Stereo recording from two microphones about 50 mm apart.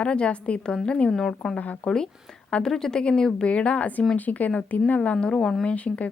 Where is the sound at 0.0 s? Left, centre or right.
Centre.